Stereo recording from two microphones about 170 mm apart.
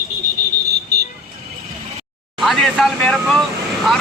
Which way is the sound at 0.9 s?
65° right (ahead or behind).